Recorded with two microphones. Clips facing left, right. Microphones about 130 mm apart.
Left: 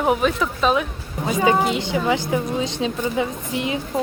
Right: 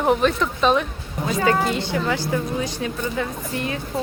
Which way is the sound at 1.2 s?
15° left (ahead or behind).